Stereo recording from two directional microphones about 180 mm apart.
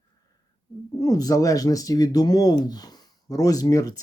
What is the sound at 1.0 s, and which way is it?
Speech, 20° left (ahead or behind).